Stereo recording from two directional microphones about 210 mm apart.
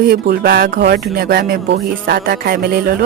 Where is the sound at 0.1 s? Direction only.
50° right (ahead or behind).